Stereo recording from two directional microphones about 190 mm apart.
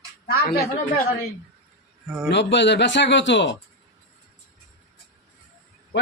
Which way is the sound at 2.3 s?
65° left (ahead or behind).